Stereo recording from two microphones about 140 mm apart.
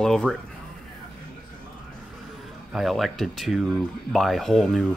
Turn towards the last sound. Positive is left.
turn(degrees=0)  # may be behind; listen again after turning